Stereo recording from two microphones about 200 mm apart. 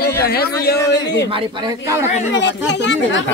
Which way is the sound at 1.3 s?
15° right (ahead or behind).